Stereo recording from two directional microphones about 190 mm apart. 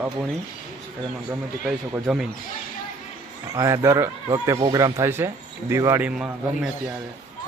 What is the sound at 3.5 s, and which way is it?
Speech, 15° right (ahead or behind).